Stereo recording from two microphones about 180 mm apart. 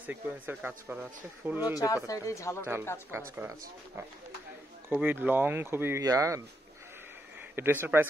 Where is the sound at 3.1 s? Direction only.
15° right (ahead or behind).